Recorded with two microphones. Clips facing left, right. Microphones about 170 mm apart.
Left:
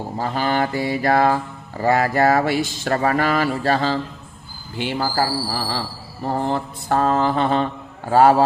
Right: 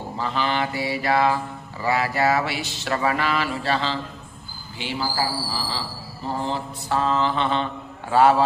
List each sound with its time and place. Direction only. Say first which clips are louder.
0.2 s speech: left 3 dB; 45° left (ahead or behind)